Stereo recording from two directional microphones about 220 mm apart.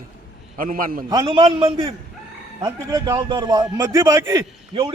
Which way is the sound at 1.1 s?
20° right (ahead or behind).